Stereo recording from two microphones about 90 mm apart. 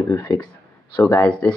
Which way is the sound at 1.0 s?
40° left (ahead or behind).